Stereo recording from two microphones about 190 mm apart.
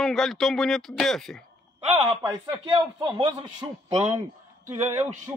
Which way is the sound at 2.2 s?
20° right (ahead or behind).